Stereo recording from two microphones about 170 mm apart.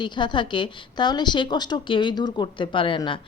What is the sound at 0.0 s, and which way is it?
Speech, 25° left (ahead or behind).